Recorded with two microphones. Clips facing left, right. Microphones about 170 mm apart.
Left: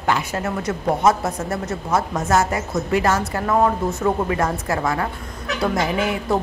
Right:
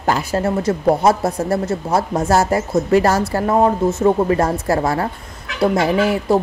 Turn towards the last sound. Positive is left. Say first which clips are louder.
# right 5 dB
turn(degrees=-30)  # may be behind; listen again after turning